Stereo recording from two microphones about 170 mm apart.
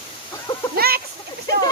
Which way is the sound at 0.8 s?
65° right (ahead or behind).